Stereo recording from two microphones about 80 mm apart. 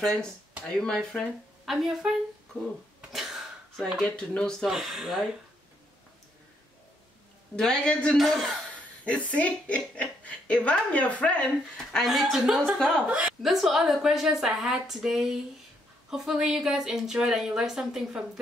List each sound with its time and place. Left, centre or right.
0.0 s a woman's voice: centre
1.7 s a woman's voice: centre
3.1 s a sound: centre
3.7 s a woman's voice: centre
4.6 s a woman's voice: centre
7.5 s a woman's voice: centre
8.2 s a woman's voice: centre
9.0 s a woman's voice: centre
12.0 s a woman's voice: centre
13.4 s a woman's voice: centre